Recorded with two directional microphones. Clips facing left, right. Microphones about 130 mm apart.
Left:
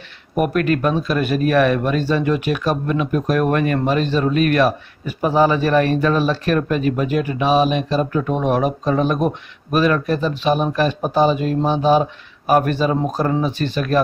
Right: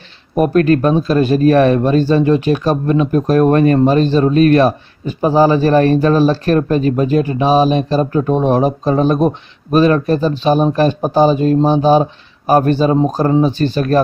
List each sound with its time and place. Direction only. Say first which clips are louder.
0.4 s speech: right 6 dB; 35° right (ahead or behind)